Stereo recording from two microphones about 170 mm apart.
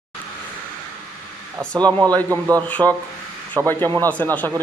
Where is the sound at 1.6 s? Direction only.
5° left (ahead or behind).